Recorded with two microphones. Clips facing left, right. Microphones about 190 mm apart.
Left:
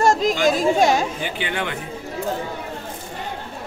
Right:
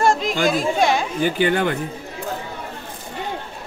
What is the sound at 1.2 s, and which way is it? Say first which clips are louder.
Speech: right 8 dB; 45° right (ahead or behind).